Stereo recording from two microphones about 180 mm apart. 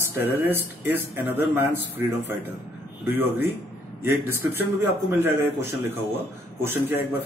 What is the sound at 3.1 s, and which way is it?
Speech, 10° right (ahead or behind).